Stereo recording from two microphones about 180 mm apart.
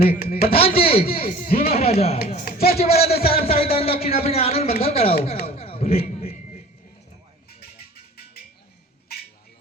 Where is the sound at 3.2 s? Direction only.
55° left (ahead or behind).